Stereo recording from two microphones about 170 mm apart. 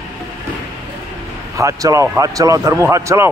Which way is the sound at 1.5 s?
20° right (ahead or behind).